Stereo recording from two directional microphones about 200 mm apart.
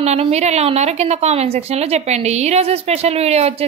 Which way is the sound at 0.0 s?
35° right (ahead or behind).